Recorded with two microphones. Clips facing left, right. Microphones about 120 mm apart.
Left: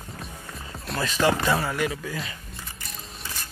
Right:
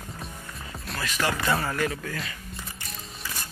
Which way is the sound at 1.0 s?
25° left (ahead or behind).